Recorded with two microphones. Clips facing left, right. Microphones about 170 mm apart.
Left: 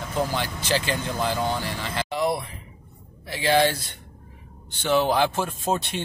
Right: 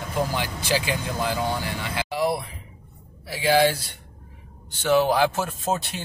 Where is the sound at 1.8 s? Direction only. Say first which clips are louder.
Even; 5° right (ahead or behind).